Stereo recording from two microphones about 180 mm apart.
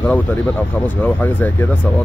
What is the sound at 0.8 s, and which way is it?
Speech, 10° left (ahead or behind).